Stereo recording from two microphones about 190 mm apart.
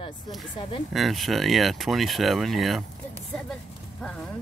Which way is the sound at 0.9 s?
Centre (ahead or behind).